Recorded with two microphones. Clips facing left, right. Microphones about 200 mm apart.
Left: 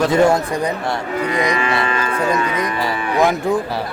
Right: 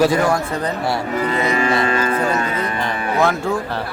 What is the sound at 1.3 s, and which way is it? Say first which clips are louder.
Cattle: left 2 dB; 15° left (ahead or behind).